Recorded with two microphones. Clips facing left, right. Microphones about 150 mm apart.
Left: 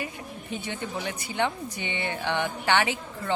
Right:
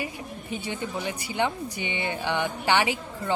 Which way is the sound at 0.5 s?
10° right (ahead or behind).